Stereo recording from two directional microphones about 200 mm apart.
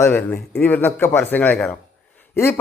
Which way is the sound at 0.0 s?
10° left (ahead or behind).